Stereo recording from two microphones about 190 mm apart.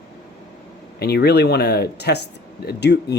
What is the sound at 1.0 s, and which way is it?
Speech, 60° left (ahead or behind).